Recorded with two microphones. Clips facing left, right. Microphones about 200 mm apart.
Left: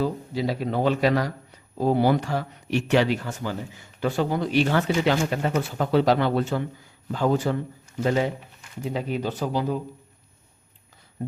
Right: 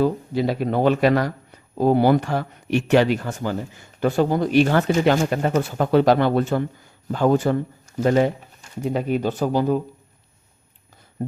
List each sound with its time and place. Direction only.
0.0 s speech: 55° right (ahead or behind)